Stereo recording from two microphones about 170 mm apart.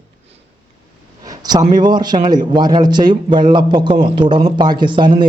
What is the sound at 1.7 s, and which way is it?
Speech, 25° right (ahead or behind).